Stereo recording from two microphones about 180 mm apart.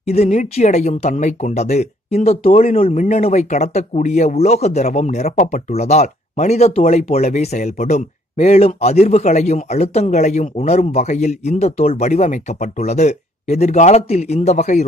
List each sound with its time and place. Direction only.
0.0 s speech: 35° left (ahead or behind)